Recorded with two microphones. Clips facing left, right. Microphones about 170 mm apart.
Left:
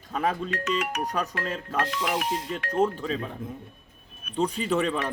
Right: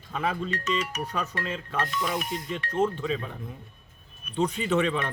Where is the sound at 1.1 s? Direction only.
40° left (ahead or behind).